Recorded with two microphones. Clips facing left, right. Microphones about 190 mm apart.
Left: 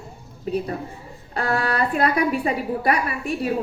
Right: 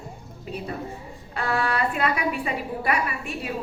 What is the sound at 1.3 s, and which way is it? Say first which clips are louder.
A woman's voice: left 2 dB; 40° left (ahead or behind).